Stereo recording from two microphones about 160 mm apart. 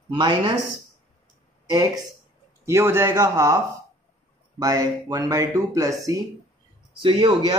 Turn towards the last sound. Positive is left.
turn(degrees=-30)  # may be behind; listen again after turning